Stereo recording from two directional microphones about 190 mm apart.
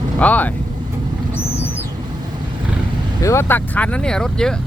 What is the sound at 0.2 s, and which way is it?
Speech, 10° left (ahead or behind).